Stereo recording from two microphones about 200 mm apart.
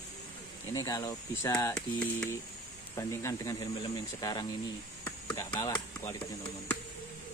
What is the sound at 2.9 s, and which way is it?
Speech, 15° left (ahead or behind).